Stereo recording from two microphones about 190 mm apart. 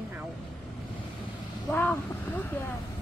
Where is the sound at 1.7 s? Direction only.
10° left (ahead or behind).